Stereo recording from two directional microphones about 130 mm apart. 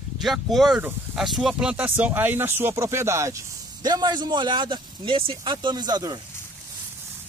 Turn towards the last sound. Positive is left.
turn(degrees=-30)  # may be behind; listen again after turning